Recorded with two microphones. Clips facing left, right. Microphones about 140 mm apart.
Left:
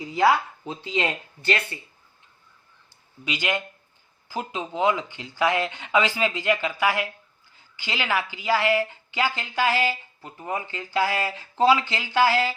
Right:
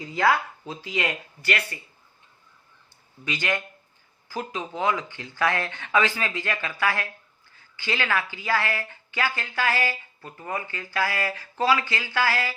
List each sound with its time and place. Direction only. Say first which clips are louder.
0.2 s a woman's voice: left 2 dB; 20° left (ahead or behind)
3.2 s a woman's voice: left 1 dB; 15° left (ahead or behind)